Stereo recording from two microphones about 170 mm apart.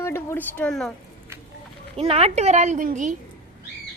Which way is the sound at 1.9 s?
35° right (ahead or behind).